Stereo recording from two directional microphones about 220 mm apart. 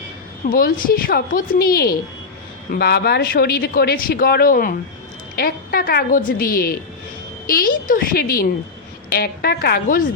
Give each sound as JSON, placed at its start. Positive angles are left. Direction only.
{"t": 0.4, "sound": "a woman's voice", "side_deg": 40}